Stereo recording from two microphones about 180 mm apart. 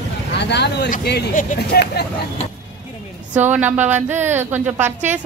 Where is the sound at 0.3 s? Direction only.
70° left (ahead or behind).